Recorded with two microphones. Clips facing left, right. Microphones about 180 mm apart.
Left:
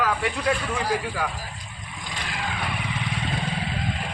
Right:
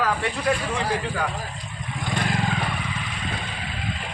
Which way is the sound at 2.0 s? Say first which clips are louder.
Right 9 dB; 55° right (ahead or behind).